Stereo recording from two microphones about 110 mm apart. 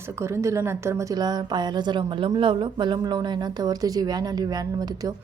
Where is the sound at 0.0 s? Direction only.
25° right (ahead or behind).